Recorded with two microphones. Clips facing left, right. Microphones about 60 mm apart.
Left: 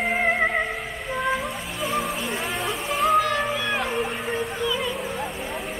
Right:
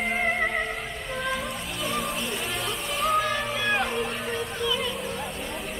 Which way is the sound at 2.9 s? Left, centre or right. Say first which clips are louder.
Left 4 dB; centre.